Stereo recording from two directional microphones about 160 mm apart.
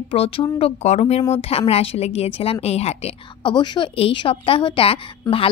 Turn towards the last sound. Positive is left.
turn(degrees=35)  # may be behind; listen again after turning